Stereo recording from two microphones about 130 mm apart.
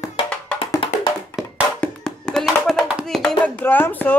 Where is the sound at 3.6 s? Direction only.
15° left (ahead or behind).